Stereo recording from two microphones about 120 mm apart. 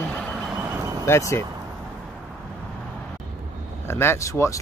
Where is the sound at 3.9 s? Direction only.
20° left (ahead or behind).